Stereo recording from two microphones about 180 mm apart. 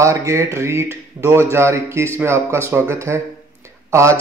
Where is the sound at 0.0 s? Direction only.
15° right (ahead or behind).